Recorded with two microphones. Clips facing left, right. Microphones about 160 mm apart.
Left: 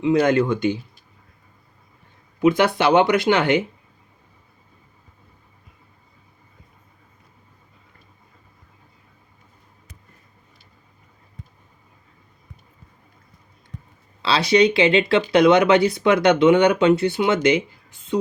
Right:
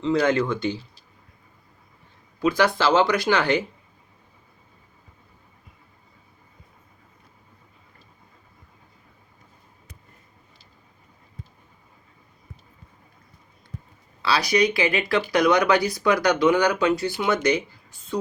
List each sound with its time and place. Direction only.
0.0 s speech: 15° left (ahead or behind)
2.4 s speech: 25° left (ahead or behind)
14.2 s speech: 25° left (ahead or behind)